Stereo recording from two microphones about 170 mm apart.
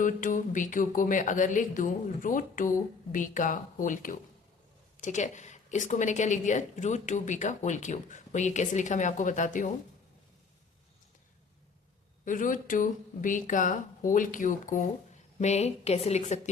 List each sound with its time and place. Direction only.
0.0 s speech: 50° left (ahead or behind)
12.2 s a woman's voice: 50° left (ahead or behind)